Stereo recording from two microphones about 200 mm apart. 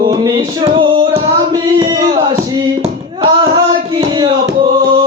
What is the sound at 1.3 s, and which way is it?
Singing, 20° right (ahead or behind).